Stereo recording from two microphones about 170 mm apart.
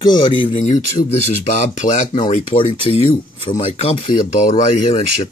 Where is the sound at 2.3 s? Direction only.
30° left (ahead or behind).